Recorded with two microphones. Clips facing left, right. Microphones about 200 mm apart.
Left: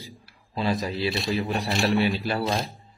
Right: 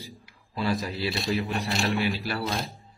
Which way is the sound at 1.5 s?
35° left (ahead or behind).